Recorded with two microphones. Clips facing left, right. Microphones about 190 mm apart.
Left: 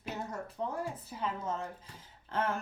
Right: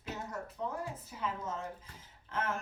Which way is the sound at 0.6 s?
35° left (ahead or behind).